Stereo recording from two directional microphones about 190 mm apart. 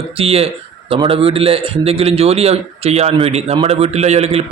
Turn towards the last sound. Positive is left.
turn(degrees=-35)  # may be behind; listen again after turning